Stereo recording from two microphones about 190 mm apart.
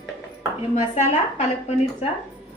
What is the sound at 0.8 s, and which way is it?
Speech, 40° left (ahead or behind).